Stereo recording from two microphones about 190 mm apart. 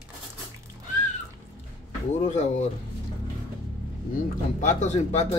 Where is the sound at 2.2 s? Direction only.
35° left (ahead or behind).